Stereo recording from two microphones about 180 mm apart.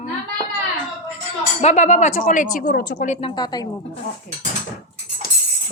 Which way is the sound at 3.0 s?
40° left (ahead or behind).